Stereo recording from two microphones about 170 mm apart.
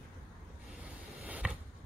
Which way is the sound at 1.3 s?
10° right (ahead or behind).